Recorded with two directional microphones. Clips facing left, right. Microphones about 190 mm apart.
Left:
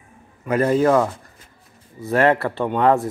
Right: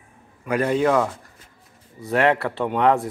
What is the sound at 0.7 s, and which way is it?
Speech, centre (ahead or behind).